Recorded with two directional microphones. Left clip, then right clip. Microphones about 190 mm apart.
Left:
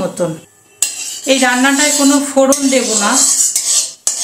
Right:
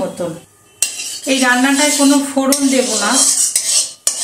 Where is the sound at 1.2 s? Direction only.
50° left (ahead or behind).